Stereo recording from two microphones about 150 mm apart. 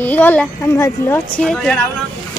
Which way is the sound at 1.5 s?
5° left (ahead or behind).